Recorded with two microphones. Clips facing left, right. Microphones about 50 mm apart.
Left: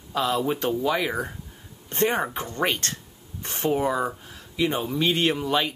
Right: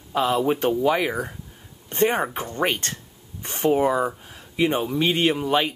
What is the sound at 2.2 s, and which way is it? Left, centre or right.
Speech, centre.